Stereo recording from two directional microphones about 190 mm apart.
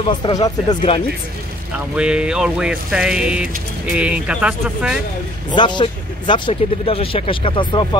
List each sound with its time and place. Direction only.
0.2 s speech: 20° left (ahead or behind)
2.0 s music: 5° right (ahead or behind)
5.5 s speech: 25° left (ahead or behind)